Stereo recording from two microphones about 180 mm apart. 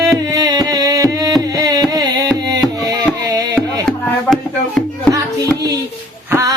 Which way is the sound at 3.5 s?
5° left (ahead or behind).